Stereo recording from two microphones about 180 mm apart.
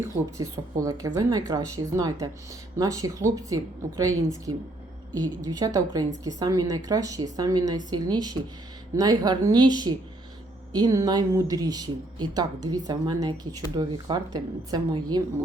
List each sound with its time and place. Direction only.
0.0 s a woman's voice: 15° right (ahead or behind)